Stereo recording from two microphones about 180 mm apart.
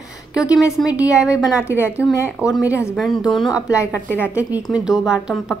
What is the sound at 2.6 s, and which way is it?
Speech, 15° left (ahead or behind).